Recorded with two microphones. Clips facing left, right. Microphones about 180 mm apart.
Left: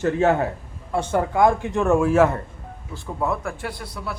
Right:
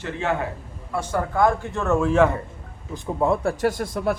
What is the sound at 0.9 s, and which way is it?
A man's voice, 25° left (ahead or behind).